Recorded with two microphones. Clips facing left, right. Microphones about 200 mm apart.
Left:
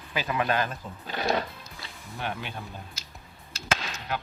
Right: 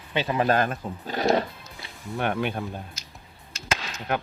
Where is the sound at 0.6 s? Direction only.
50° right (ahead or behind).